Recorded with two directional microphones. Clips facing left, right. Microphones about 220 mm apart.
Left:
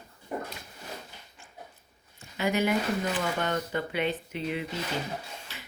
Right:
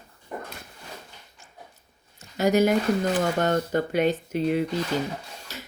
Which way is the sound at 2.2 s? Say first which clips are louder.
Right 7 dB; 40° right (ahead or behind).